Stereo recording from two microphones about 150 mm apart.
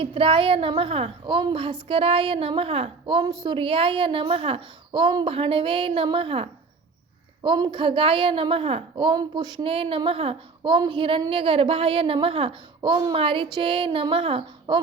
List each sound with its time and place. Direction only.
0.0 s a woman's voice: 35° right (ahead or behind)
4.9 s a woman's voice: 30° right (ahead or behind)